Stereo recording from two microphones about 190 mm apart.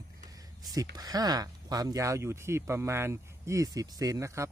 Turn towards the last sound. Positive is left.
turn(degrees=-15)  # may be behind; listen again after turning